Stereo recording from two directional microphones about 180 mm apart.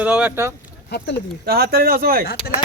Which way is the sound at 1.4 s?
55° right (ahead or behind).